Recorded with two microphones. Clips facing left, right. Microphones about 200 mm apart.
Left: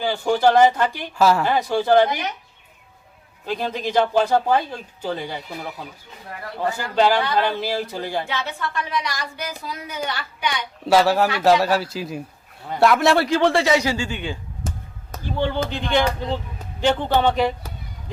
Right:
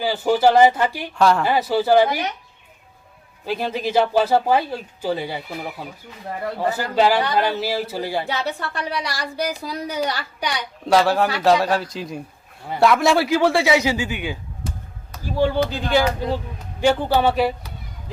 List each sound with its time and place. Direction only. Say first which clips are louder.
0.0 s speech: right 1 dB; 10° right (ahead or behind)
1.2 s a man's voice: even; 5° left (ahead or behind)
1.5 s speech: right 1 dB; 5° right (ahead or behind)
3.4 s a man's voice: right 1 dB; 10° right (ahead or behind)
8.3 s a woman's voice: right 2 dB; 35° right (ahead or behind)
10.8 s a man's voice: even; 5° left (ahead or behind)